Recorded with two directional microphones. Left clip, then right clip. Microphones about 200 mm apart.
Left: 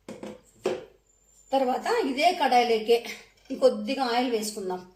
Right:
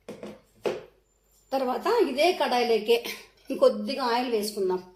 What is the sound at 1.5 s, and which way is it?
A woman's voice, 25° right (ahead or behind).